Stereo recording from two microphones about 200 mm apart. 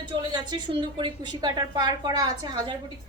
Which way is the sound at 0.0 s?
20° right (ahead or behind).